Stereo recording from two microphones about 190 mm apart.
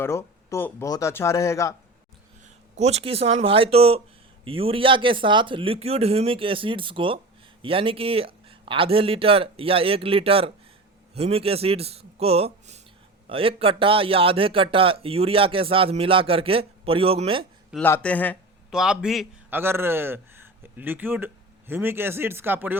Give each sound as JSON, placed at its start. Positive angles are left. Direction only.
{"t": 0.0, "sound": "speech", "side_deg": 15}
{"t": 2.4, "sound": "a man's voice", "side_deg": -35}
{"t": 17.8, "sound": "speech", "side_deg": 10}
{"t": 18.7, "sound": "a man's voice", "side_deg": -5}